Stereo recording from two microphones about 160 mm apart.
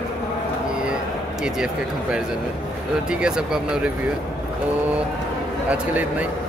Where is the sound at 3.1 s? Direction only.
5° right (ahead or behind).